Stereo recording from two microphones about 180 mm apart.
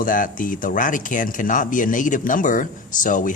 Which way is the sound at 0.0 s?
50° left (ahead or behind).